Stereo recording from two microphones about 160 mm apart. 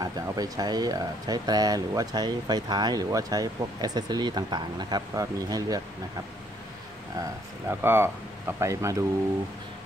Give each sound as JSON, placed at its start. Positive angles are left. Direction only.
{"t": 0.0, "sound": "speech", "side_deg": -25}